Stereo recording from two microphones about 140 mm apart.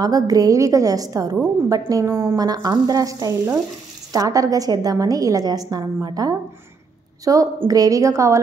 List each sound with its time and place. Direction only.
0.0 s a woman's voice: 25° right (ahead or behind)